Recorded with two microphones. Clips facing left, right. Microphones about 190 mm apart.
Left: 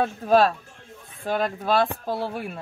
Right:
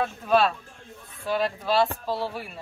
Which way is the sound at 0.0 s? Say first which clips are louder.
Left 3 dB; 40° left (ahead or behind).